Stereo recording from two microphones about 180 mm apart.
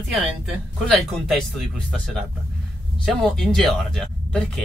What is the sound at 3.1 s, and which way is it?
Speech, centre (ahead or behind).